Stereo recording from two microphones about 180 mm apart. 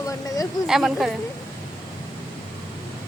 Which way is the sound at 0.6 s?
Centre (ahead or behind).